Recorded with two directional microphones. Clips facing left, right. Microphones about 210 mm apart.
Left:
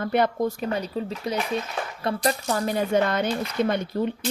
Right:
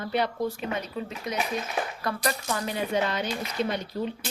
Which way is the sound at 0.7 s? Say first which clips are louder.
Left 4 dB; 30° left (ahead or behind).